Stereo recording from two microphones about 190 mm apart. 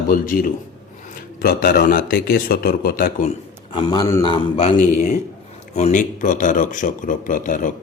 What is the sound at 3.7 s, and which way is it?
Speech, 25° left (ahead or behind).